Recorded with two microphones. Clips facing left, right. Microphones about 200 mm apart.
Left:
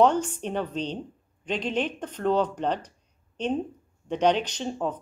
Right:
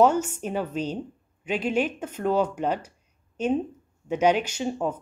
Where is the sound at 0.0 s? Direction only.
10° right (ahead or behind).